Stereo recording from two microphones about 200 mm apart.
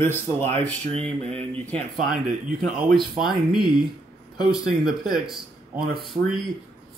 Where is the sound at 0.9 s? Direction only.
30° right (ahead or behind).